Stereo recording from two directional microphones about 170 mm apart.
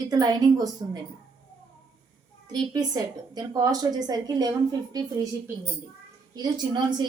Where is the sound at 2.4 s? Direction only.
25° right (ahead or behind).